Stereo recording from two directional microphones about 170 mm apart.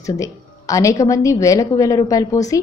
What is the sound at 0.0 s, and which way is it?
A woman's voice, 20° left (ahead or behind).